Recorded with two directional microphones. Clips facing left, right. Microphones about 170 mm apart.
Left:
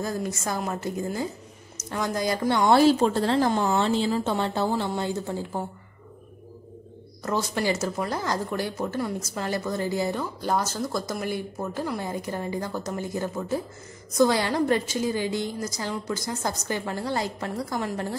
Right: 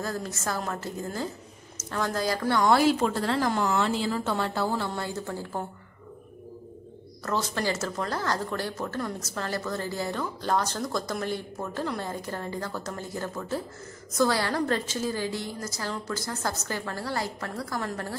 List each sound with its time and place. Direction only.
0.0 s a woman's voice: 15° left (ahead or behind)
7.2 s a woman's voice: 15° left (ahead or behind)